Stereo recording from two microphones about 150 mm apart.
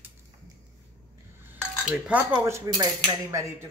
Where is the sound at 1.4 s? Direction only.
10° right (ahead or behind).